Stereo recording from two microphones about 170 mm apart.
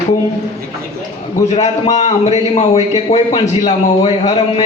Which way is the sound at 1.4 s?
40° left (ahead or behind).